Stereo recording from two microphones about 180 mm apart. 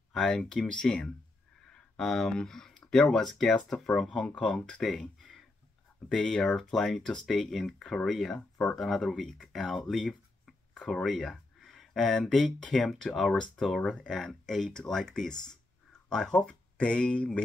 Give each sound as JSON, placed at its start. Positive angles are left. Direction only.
{"t": 0.1, "sound": "speech", "side_deg": 5}